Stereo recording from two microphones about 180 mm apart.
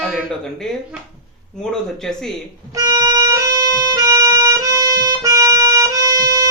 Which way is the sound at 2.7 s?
20° right (ahead or behind).